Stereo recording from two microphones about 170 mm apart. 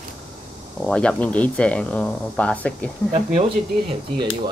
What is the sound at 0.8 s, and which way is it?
Speech, 5° left (ahead or behind).